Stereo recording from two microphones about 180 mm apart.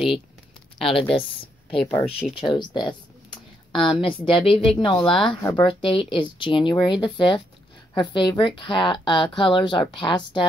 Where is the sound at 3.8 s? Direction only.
30° left (ahead or behind).